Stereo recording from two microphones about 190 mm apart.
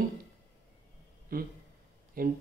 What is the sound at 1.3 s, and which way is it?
Speech, 50° right (ahead or behind).